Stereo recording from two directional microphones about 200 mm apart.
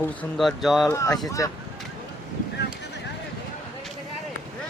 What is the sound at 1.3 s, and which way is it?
Speech, 15° left (ahead or behind).